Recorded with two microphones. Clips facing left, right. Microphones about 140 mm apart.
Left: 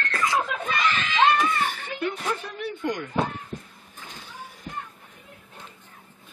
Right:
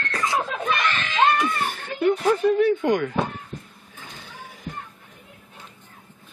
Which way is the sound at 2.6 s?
85° right.